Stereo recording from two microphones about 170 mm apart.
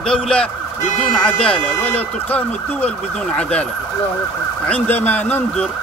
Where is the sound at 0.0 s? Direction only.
5° left (ahead or behind).